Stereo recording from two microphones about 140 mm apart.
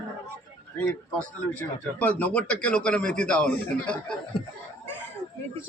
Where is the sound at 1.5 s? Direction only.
10° left (ahead or behind).